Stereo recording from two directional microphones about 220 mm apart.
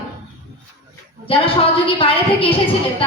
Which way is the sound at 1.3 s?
25° left (ahead or behind).